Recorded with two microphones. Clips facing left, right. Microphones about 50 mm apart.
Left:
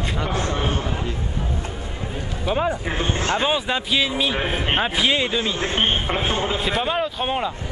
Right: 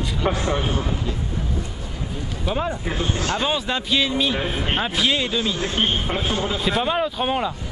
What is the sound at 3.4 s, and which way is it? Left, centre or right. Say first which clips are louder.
Speech: left 1 dB; centre.